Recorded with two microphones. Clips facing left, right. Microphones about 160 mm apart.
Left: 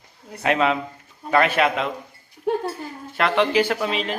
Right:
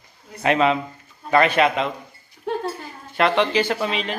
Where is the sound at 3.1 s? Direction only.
Centre (ahead or behind).